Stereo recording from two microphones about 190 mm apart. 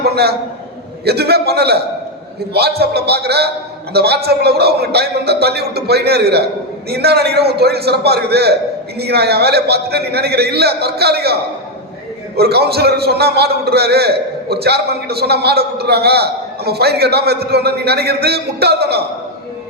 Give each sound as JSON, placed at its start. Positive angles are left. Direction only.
{"t": 0.0, "sound": "a man's voice", "side_deg": -55}
{"t": 12.4, "sound": "a man's voice", "side_deg": -55}